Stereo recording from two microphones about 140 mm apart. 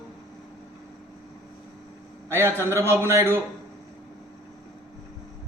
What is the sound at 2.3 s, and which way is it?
Speech, 15° left (ahead or behind).